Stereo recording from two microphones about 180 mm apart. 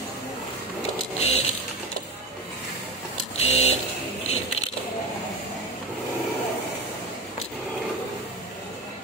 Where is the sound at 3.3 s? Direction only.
35° left (ahead or behind).